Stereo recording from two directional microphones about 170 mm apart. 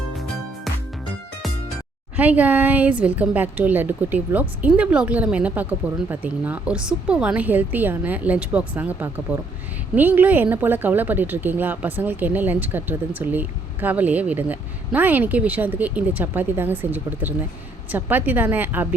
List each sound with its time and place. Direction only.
2.1 s speech: 10° right (ahead or behind)